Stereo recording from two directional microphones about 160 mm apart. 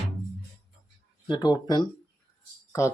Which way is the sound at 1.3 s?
25° left (ahead or behind).